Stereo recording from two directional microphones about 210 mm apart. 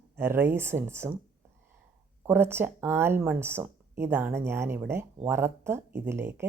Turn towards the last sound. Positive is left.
turn(degrees=-10)  # may be behind; listen again after turning